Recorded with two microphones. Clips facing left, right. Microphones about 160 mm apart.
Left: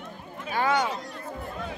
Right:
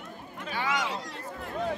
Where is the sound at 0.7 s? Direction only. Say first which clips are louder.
Left 5 dB; 90° right.